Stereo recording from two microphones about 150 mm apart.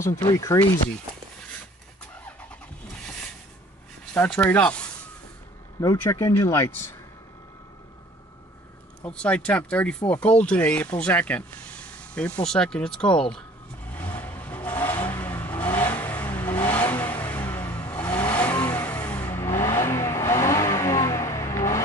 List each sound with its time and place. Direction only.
0.3 s speech: 20° left (ahead or behind)
4.1 s speech: 10° left (ahead or behind)
5.8 s speech: 20° left (ahead or behind)
9.0 s speech: 10° left (ahead or behind)
14.1 s vehicle: 15° left (ahead or behind)